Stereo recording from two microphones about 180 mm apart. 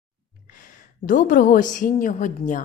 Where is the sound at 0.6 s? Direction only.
50° left (ahead or behind).